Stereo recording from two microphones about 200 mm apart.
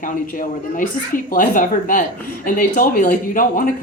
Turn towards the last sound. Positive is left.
turn(degrees=45)  # may be behind; listen again after turning